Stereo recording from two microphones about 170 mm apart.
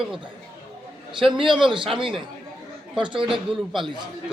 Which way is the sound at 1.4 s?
30° right (ahead or behind).